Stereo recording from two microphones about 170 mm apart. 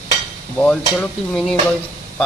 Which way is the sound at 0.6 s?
5° left (ahead or behind).